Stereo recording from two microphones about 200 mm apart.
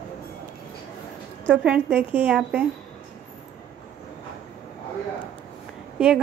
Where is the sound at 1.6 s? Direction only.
5° right (ahead or behind).